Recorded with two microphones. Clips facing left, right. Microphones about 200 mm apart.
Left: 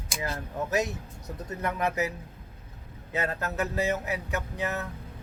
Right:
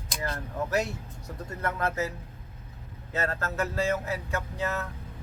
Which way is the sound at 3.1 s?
15° left (ahead or behind).